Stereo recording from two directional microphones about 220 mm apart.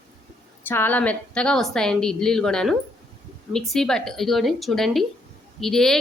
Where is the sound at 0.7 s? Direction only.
10° left (ahead or behind).